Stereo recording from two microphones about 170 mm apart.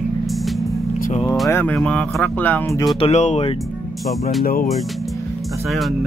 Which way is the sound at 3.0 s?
40° left (ahead or behind).